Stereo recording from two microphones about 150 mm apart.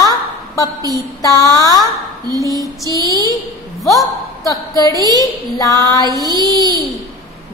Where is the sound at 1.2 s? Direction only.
25° left (ahead or behind).